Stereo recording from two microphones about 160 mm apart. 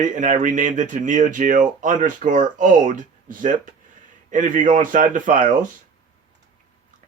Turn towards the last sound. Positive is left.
turn(degrees=-55)  # may be behind; listen again after turning